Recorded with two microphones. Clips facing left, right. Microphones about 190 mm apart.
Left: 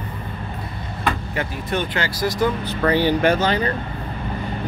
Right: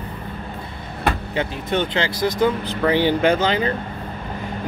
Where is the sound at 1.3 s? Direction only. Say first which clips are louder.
Right 2 dB; 20° right (ahead or behind).